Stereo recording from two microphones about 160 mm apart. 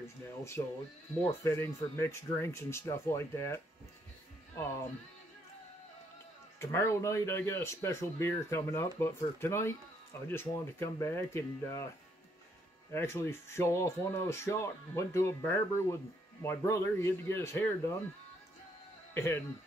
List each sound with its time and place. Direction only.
0.6 s speech: 25° left (ahead or behind)
6.6 s speech: 15° left (ahead or behind)
12.9 s speech: 15° left (ahead or behind)
19.1 s speech: 15° left (ahead or behind)